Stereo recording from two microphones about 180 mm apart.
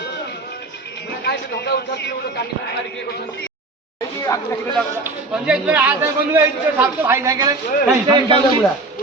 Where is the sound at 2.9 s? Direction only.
65° left (ahead or behind).